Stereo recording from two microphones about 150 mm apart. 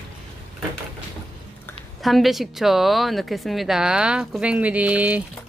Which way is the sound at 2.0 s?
Centre (ahead or behind).